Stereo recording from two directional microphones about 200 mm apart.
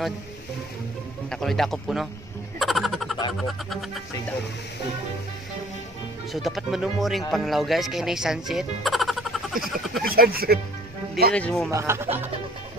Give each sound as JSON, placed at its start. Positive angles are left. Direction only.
{"t": 1.3, "sound": "speech", "side_deg": 0}
{"t": 2.6, "sound": "a sound", "side_deg": 0}
{"t": 3.3, "sound": "speech", "side_deg": 0}
{"t": 6.3, "sound": "speech", "side_deg": 0}
{"t": 10.0, "sound": "speech", "side_deg": -50}
{"t": 11.3, "sound": "speech", "side_deg": 5}
{"t": 11.7, "sound": "speech", "side_deg": -15}